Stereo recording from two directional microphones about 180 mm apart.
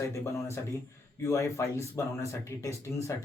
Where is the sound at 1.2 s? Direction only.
15° left (ahead or behind).